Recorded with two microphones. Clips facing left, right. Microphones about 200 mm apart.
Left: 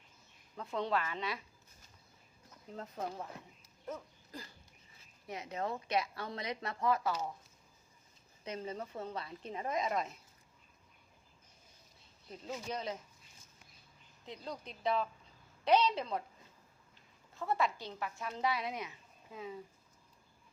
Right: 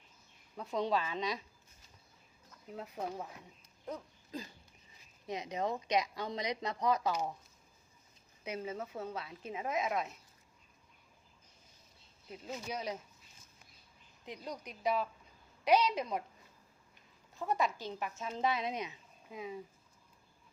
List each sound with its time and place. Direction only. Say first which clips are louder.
0.5 s a woman's voice: right 2 dB; 15° right (ahead or behind)
2.7 s a woman's voice: right 1 dB; 10° right (ahead or behind)
3.8 s a sound: right 1 dB; 20° right (ahead or behind)
5.3 s a woman's voice: right 3 dB; 15° right (ahead or behind)
8.4 s a woman's voice: right 1 dB; 10° right (ahead or behind)
12.3 s a woman's voice: even; 10° right (ahead or behind)
14.3 s a woman's voice: right 1 dB; 15° right (ahead or behind)